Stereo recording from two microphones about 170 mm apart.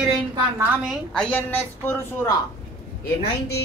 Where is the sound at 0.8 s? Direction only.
Centre (ahead or behind).